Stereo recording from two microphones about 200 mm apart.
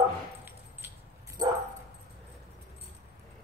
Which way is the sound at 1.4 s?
20° right (ahead or behind).